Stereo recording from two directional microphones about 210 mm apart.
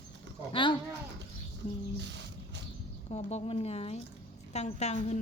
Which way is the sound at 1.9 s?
55° right (ahead or behind).